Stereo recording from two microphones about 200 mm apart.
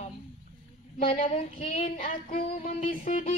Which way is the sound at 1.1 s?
40° left (ahead or behind).